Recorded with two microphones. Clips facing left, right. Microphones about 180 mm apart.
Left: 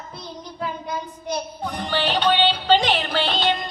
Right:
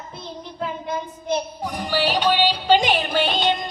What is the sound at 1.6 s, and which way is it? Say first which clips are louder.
Music: left 1 dB; 10° right (ahead or behind).